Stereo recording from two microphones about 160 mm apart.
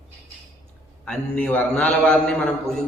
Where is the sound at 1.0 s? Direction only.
10° left (ahead or behind).